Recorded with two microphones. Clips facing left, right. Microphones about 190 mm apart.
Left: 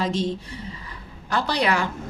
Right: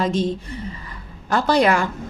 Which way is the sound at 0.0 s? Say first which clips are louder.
Right 4 dB; 50° right (ahead or behind).